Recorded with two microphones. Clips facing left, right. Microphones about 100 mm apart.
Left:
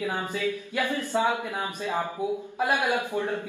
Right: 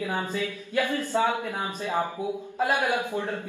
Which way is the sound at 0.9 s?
20° left (ahead or behind).